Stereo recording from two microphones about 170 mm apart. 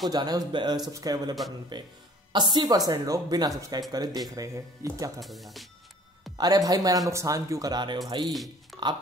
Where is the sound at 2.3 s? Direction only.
25° right (ahead or behind).